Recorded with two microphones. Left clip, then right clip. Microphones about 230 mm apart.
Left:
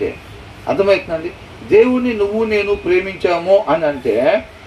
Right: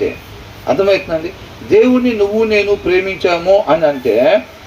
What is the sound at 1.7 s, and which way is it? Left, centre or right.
A man's voice, right.